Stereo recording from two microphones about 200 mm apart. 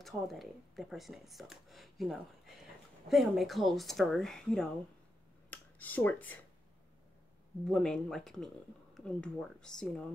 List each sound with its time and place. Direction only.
0.0 s speech: centre (ahead or behind)
7.6 s speech: 5° left (ahead or behind)